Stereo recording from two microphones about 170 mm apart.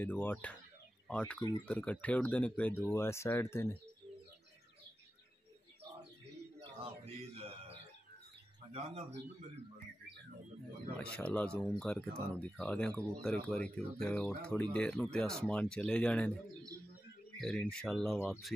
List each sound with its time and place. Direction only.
0.0 s speech: 10° left (ahead or behind)
7.3 s a sound: 35° right (ahead or behind)
8.7 s a man's voice: 40° right (ahead or behind)
11.0 s speech: 5° left (ahead or behind)
17.4 s speech: 5° left (ahead or behind)